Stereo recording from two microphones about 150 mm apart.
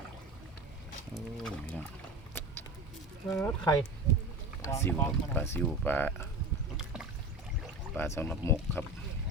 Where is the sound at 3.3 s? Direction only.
20° left (ahead or behind).